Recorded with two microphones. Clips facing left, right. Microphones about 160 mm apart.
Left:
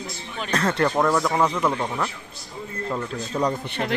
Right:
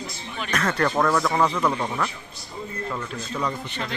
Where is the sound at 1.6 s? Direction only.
5° left (ahead or behind).